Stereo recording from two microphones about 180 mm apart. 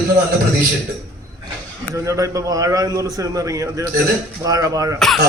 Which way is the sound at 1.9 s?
15° right (ahead or behind).